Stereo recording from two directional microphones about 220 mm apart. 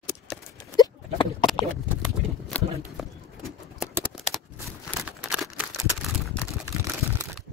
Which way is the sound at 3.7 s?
Centre (ahead or behind).